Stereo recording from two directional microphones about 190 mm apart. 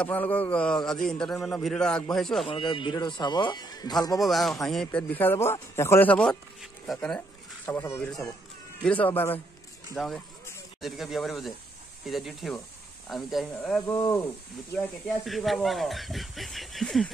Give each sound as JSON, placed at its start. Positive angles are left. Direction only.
{"t": 0.0, "sound": "a man's voice", "side_deg": 10}
{"t": 2.4, "sound": "speech", "side_deg": 30}
{"t": 4.2, "sound": "a man's voice", "side_deg": 0}
{"t": 13.9, "sound": "speech", "side_deg": 20}
{"t": 14.7, "sound": "a man's voice", "side_deg": 10}